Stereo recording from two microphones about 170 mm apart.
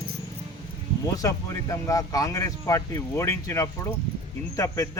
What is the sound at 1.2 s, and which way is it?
Speech, 20° left (ahead or behind).